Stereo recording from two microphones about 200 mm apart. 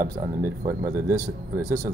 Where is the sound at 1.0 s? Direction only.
15° right (ahead or behind).